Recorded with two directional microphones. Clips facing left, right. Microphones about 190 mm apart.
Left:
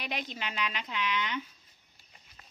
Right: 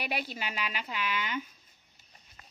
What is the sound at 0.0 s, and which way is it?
Speech, 10° right (ahead or behind).